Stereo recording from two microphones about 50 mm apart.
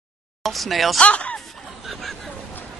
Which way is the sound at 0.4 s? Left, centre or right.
Centre.